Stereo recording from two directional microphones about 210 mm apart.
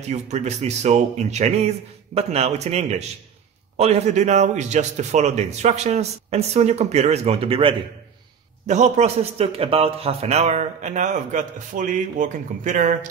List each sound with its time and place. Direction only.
0.0 s speech: 35° right (ahead or behind)